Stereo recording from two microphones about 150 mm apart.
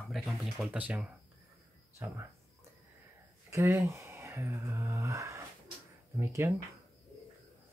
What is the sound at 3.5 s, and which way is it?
Speech, 20° right (ahead or behind).